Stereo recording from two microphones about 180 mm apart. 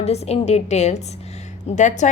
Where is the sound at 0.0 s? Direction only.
35° left (ahead or behind).